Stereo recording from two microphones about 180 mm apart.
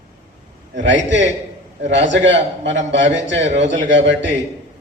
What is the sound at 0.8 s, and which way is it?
A man's voice, 85° right.